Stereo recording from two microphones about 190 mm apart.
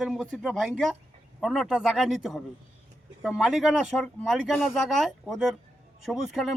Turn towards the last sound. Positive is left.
turn(degrees=0)  # may be behind; listen again after turning